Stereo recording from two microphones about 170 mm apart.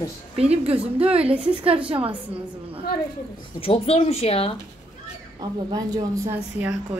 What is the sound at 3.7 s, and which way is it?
Speech, 35° left (ahead or behind).